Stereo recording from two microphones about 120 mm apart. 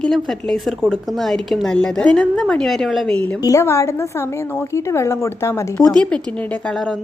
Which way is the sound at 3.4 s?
25° left (ahead or behind).